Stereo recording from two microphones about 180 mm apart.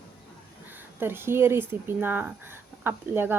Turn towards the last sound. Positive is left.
turn(degrees=-10)  # may be behind; listen again after turning